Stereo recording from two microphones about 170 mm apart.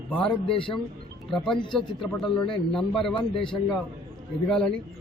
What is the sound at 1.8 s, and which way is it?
A man's voice, centre (ahead or behind).